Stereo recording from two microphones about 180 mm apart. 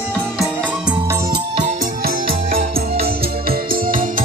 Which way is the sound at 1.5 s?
45° right (ahead or behind).